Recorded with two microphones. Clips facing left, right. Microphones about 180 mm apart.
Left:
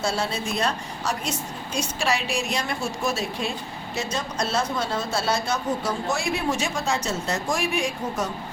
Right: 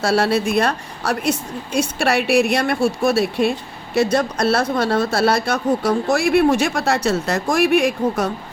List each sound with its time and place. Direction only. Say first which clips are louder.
0.0 s speech: right 9 dB; 75° right (ahead or behind)